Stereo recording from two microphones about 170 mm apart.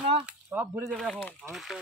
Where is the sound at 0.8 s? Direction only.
5° left (ahead or behind).